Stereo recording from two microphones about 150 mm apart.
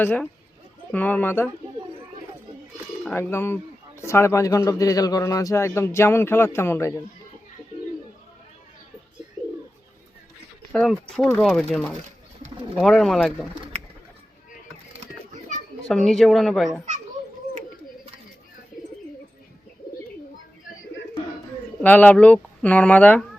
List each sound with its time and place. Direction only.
0.0 s a man's voice: 10° left (ahead or behind)
3.2 s a man's voice: 15° left (ahead or behind)
7.7 s bird: 50° left (ahead or behind)
9.4 s bird: 5° right (ahead or behind)
10.7 s speech: 5° left (ahead or behind)
15.9 s speech: centre (ahead or behind)
21.8 s a man's voice: 10° left (ahead or behind)